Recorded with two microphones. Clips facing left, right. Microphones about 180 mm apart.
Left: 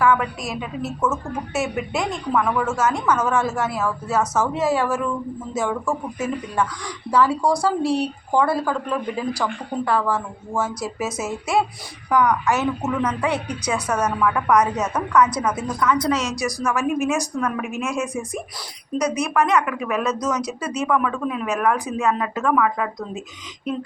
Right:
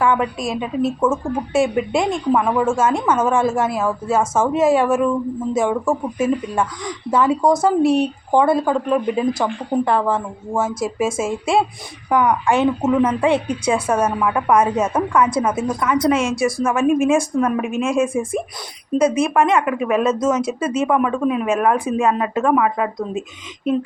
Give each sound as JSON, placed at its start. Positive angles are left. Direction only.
{"t": 0.0, "sound": "speech", "side_deg": -25}